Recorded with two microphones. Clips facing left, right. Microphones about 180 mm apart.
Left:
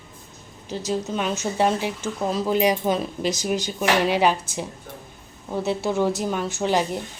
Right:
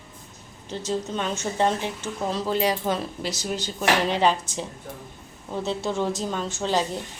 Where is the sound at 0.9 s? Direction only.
10° left (ahead or behind).